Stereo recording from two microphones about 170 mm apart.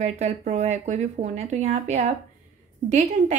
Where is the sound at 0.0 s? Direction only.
40° right (ahead or behind).